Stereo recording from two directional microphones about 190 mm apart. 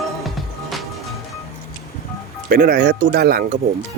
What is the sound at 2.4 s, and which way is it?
Speech, 50° right (ahead or behind).